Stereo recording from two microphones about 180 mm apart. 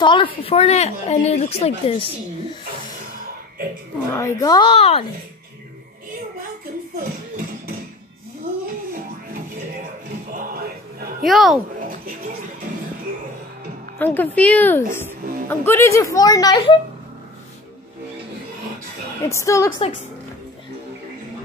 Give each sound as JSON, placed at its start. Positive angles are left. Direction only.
{"t": 0.0, "sound": "a woman's voice", "side_deg": 25}
{"t": 4.1, "sound": "a woman's voice", "side_deg": 15}
{"t": 11.2, "sound": "speech", "side_deg": 0}
{"t": 13.9, "sound": "speech", "side_deg": 10}
{"t": 19.2, "sound": "speech", "side_deg": 15}